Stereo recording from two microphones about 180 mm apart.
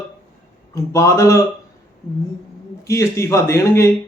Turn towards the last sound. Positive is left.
turn(degrees=15)  # may be behind; listen again after turning